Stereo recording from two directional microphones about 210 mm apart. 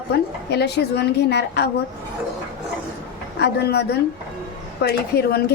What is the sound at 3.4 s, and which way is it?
A woman's voice, 50° left (ahead or behind).